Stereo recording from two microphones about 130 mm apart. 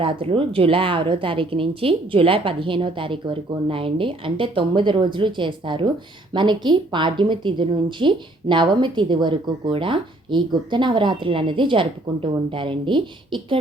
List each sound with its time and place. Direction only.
0.0 s a woman's voice: 45° right (ahead or behind)